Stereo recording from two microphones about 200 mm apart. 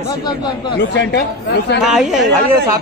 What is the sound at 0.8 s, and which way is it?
Speech, 60° left (ahead or behind).